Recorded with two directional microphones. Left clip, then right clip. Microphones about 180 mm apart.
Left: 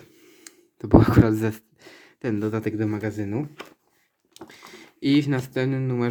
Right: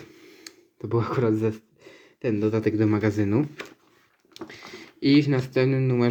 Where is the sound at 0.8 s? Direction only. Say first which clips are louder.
Left 6 dB; 35° left (ahead or behind); by 2.8 s 10° left (ahead or behind).